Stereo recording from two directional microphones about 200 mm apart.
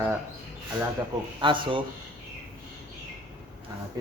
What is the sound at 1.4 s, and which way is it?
Speech, 25° right (ahead or behind).